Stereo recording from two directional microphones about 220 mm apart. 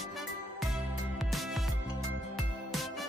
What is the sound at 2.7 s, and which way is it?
Music, centre (ahead or behind).